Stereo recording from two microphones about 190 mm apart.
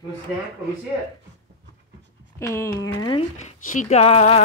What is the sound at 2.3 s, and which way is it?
Speech, 15° left (ahead or behind).